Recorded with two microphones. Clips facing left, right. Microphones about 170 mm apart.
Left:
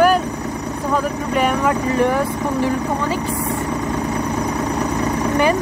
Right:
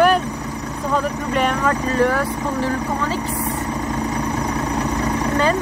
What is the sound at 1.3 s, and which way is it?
Speech, 5° left (ahead or behind).